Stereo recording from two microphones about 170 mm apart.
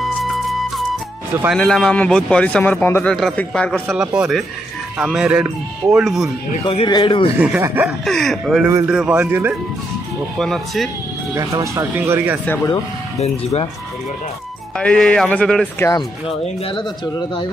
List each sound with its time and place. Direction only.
0.0 s music: centre (ahead or behind)
1.5 s speech: 5° left (ahead or behind)
3.8 s speech: 5° right (ahead or behind)
6.6 s speech: 30° left (ahead or behind)
7.3 s speech: 10° right (ahead or behind)
8.0 s speech: centre (ahead or behind)
10.4 s speech: centre (ahead or behind)
11.3 s speech: 20° right (ahead or behind)
13.2 s speech: 40° left (ahead or behind)
14.8 s speech: 5° left (ahead or behind)
16.3 s speech: 25° left (ahead or behind)